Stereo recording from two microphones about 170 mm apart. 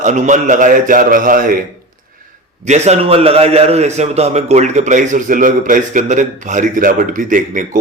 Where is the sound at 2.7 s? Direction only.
40° right (ahead or behind).